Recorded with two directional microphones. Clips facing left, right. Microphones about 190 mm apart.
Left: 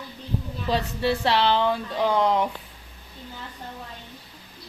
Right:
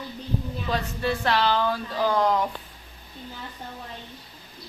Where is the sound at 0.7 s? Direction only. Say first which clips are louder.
Left 3 dB; 30° left (ahead or behind).